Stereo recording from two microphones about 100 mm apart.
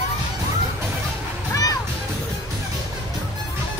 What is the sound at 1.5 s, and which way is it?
Music, 35° left (ahead or behind).